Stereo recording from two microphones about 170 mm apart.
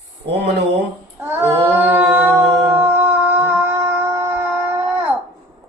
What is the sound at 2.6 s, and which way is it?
Howl, 10° right (ahead or behind).